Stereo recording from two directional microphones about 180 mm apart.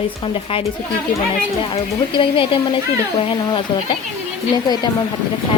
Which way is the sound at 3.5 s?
25° left (ahead or behind).